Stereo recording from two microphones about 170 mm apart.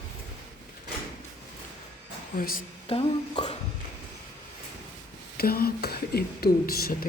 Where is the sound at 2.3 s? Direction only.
60° left (ahead or behind).